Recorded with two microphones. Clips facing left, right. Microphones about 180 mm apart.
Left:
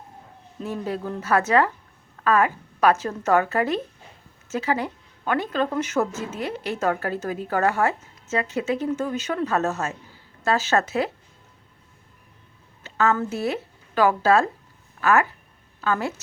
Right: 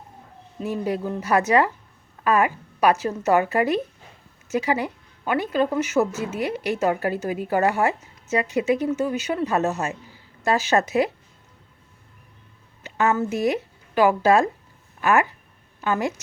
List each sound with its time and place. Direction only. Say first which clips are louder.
0.6 s a woman's voice: right 3 dB; 10° right (ahead or behind)
12.8 s a woman's voice: right 1 dB; 15° right (ahead or behind)